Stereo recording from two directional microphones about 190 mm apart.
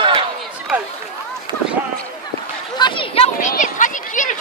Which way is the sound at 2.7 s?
25° left (ahead or behind).